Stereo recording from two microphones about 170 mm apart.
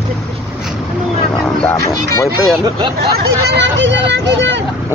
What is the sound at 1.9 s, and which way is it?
Speech, 15° left (ahead or behind).